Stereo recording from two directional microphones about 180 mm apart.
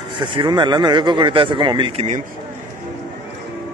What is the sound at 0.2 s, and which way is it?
A man's voice, 25° right (ahead or behind).